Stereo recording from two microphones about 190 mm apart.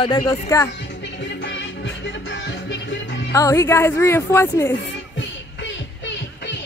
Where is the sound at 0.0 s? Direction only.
20° left (ahead or behind).